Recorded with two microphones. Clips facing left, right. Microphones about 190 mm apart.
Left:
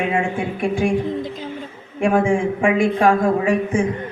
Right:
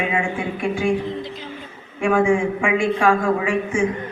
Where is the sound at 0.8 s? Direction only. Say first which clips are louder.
Left 2 dB; 45° left (ahead or behind).